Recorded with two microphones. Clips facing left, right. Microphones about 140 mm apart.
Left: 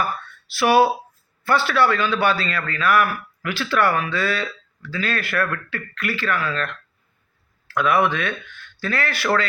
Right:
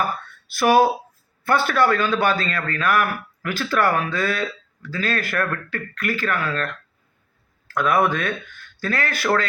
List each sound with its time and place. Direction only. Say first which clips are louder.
0.4 s a man's voice: even; 45° right (ahead or behind)
7.7 s a man's voice: even; 45° right (ahead or behind)